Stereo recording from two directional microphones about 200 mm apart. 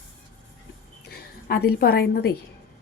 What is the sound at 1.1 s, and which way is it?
A woman's voice, 50° left (ahead or behind).